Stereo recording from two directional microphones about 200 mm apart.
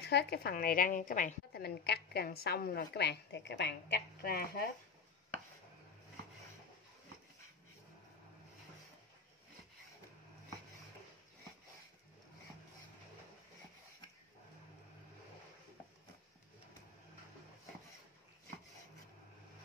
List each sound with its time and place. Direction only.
0.0 s a woman's voice: 55° left (ahead or behind)